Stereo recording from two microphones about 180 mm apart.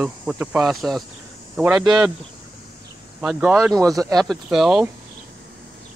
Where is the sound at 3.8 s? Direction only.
20° right (ahead or behind).